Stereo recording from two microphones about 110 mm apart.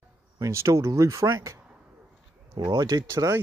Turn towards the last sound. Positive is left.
turn(degrees=-35)  # may be behind; listen again after turning